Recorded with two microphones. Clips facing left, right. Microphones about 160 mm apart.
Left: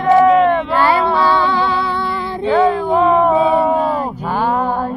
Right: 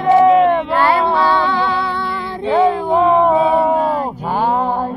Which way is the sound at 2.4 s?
20° right (ahead or behind).